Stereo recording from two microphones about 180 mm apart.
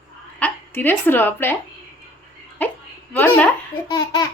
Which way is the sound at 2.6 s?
10° left (ahead or behind).